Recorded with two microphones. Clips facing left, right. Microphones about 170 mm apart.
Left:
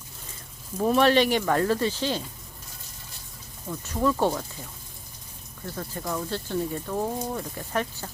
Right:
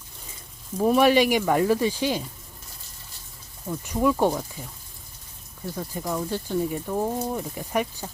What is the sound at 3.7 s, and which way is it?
Speech, 10° right (ahead or behind).